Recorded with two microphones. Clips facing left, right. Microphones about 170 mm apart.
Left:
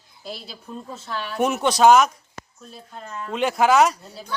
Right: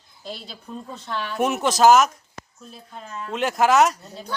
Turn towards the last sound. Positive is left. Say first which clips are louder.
# left 1 dB
turn(degrees=0)  # may be behind; listen again after turning